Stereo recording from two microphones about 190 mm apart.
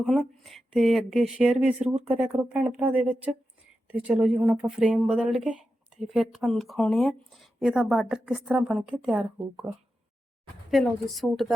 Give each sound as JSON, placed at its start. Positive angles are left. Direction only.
{"t": 0.0, "sound": "speech", "side_deg": 0}